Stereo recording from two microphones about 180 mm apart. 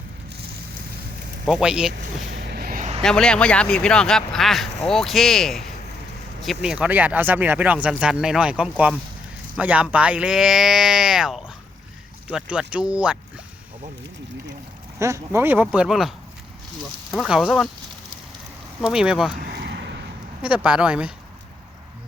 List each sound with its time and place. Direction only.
1.5 s speech: 5° right (ahead or behind)
2.2 s vehicle: 65° right (ahead or behind); by 2.9 s 50° right (ahead or behind)
3.0 s speech: 5° left (ahead or behind)
14.9 s speech: 15° right (ahead or behind)
18.8 s speech: 5° right (ahead or behind)
19.5 s a sound: 70° right (ahead or behind)
20.4 s speech: 10° right (ahead or behind)